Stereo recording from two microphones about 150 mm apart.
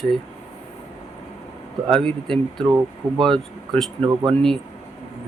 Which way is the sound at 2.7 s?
30° right (ahead or behind).